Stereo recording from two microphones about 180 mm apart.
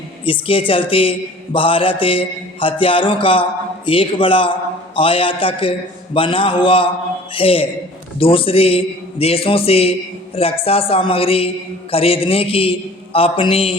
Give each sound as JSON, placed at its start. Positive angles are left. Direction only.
{"t": 0.3, "sound": "mantra", "side_deg": 30}
{"t": 8.2, "sound": "a man's voice", "side_deg": 30}